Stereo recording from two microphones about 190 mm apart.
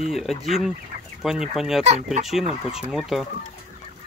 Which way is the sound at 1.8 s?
35° right (ahead or behind).